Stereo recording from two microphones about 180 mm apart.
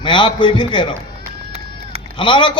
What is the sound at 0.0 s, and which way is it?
Speech, 25° left (ahead or behind).